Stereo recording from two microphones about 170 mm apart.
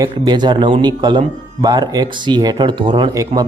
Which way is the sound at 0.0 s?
25° right (ahead or behind).